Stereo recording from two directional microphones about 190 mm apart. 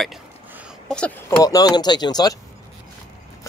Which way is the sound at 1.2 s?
15° left (ahead or behind).